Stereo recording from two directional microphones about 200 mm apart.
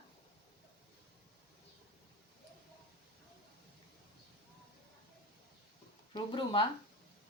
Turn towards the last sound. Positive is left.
turn(degrees=25)  # may be behind; listen again after turning